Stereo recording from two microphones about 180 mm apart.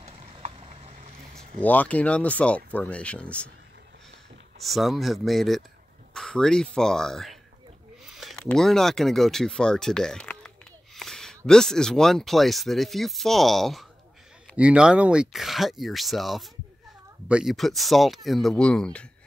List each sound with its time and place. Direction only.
0.0 s a sound: 35° right (ahead or behind)
0.6 s vehicle: 35° right (ahead or behind)
1.6 s speech: 10° left (ahead or behind)
4.6 s speech: centre (ahead or behind)